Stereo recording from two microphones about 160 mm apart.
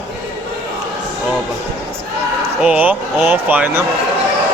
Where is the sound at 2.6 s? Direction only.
10° right (ahead or behind).